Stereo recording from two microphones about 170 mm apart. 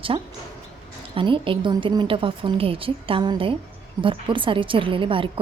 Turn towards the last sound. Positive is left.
turn(degrees=-30)  # may be behind; listen again after turning